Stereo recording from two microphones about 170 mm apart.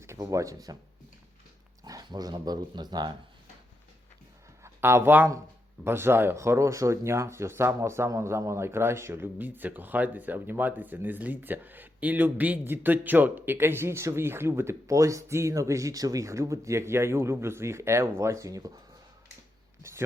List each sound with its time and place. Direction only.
0.0 s speech: 15° right (ahead or behind)
1.8 s speech: 25° right (ahead or behind)
4.6 s speech: 15° right (ahead or behind)
19.8 s a sound: 15° right (ahead or behind)